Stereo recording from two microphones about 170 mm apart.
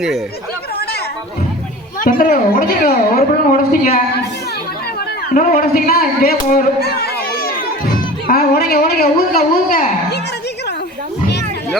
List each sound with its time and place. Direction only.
2.0 s a man's voice: 55° left (ahead or behind)